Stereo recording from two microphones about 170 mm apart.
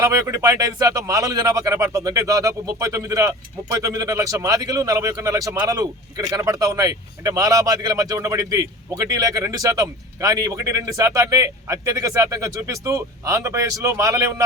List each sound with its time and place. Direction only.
0.0 s speech: 20° right (ahead or behind)